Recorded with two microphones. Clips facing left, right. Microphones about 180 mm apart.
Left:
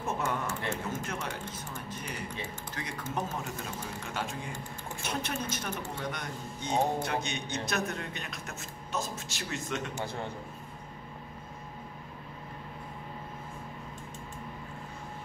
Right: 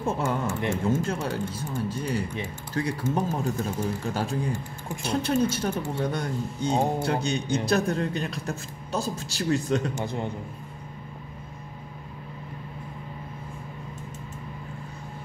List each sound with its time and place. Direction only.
0.0 s speech: 30° right (ahead or behind)
9.9 s a man's voice: 15° right (ahead or behind)